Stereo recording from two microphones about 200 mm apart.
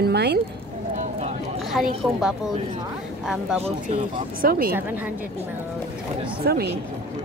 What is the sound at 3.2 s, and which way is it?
Speech, centre (ahead or behind).